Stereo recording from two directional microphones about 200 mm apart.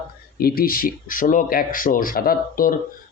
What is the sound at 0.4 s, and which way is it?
A man's voice, 50° left (ahead or behind).